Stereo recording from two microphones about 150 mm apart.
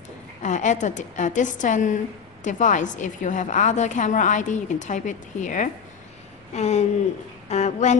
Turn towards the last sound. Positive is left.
turn(degrees=50)  # may be behind; listen again after turning